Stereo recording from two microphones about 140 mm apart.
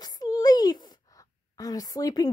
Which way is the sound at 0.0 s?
30° left (ahead or behind).